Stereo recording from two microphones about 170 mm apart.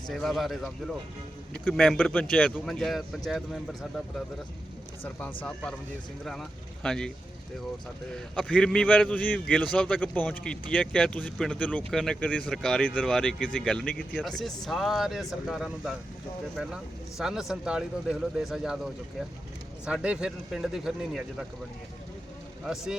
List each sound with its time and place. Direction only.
0.1 s speech: centre (ahead or behind)
5.4 s speech: 5° left (ahead or behind)
8.1 s speech: 5° left (ahead or behind)
22.6 s speech: 5° right (ahead or behind)